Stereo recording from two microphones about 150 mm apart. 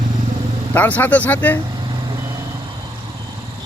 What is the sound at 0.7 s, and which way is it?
Speech, 10° left (ahead or behind).